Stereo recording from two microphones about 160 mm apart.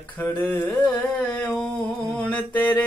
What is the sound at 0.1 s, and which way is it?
Speech, 10° left (ahead or behind).